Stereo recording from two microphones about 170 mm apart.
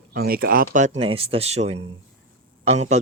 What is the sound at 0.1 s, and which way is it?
Speech, 60° right (ahead or behind).